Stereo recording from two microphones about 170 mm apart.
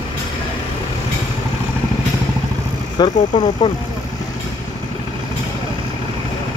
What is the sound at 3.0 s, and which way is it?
Speech, 25° left (ahead or behind).